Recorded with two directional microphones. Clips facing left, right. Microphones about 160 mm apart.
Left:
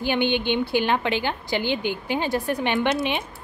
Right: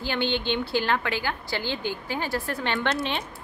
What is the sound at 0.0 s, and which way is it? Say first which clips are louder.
A woman's voice: left 4 dB; 15° left (ahead or behind).